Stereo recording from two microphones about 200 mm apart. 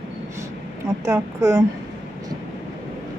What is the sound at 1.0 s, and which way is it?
Speech, 15° right (ahead or behind).